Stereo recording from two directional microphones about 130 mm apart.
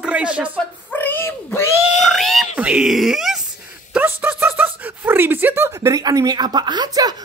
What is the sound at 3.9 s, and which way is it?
Speech, 15° right (ahead or behind).